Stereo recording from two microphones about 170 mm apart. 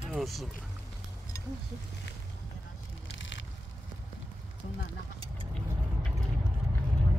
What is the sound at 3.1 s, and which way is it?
Crushing, 90° left.